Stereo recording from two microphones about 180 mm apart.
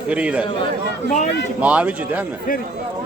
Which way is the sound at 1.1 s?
40° left (ahead or behind).